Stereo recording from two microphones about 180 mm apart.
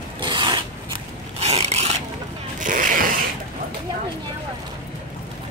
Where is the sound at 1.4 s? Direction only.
35° right (ahead or behind).